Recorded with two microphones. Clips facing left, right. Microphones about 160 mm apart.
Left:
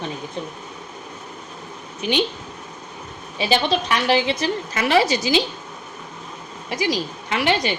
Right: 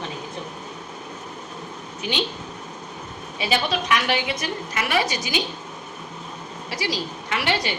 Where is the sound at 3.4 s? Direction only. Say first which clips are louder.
Left 4 dB; 30° left (ahead or behind).